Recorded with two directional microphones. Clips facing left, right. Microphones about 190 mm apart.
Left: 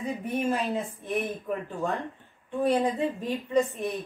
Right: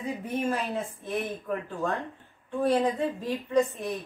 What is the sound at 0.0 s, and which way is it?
Speech, 15° left (ahead or behind).